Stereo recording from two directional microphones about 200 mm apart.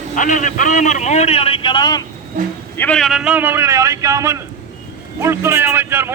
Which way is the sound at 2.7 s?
5° left (ahead or behind).